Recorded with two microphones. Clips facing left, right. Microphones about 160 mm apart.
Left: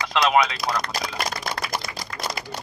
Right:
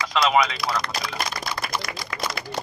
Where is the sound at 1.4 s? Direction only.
50° left (ahead or behind).